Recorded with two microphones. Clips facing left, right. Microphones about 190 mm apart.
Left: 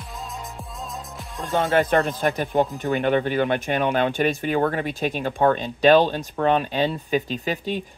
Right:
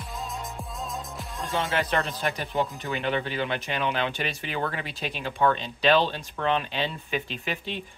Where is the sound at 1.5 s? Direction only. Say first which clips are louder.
Left 7 dB; 50° left (ahead or behind).